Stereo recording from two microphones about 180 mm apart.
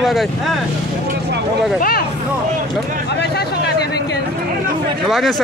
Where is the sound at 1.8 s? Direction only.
55° left (ahead or behind).